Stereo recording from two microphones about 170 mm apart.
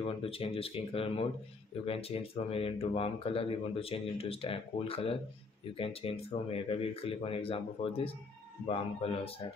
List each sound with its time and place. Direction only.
0.0 s speech: 35° left (ahead or behind)